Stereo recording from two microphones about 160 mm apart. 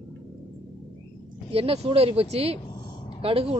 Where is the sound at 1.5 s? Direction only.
40° right (ahead or behind).